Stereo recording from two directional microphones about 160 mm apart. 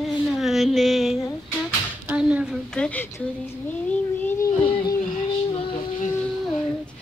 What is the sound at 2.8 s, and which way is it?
Child singing, 10° left (ahead or behind).